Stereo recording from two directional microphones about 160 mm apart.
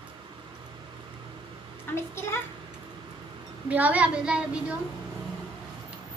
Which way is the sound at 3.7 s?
10° right (ahead or behind).